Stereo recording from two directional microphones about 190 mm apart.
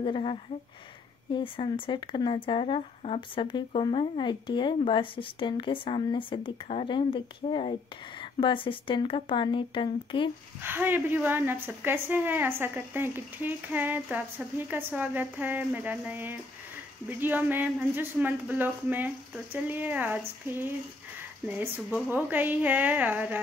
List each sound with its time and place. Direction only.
0.0 s speech: 30° left (ahead or behind)
10.6 s a woman's voice: 10° right (ahead or behind)